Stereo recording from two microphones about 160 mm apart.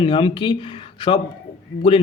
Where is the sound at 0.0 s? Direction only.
30° left (ahead or behind).